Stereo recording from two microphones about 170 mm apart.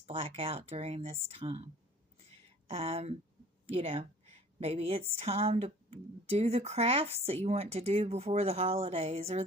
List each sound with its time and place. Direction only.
0.0 s speech: 35° right (ahead or behind)